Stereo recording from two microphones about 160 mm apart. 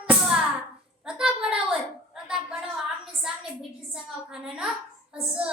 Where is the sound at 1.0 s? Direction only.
5° right (ahead or behind).